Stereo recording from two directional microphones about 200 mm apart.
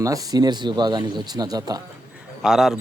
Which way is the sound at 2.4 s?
Centre (ahead or behind).